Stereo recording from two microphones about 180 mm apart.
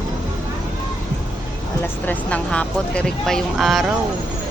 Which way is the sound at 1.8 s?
10° left (ahead or behind).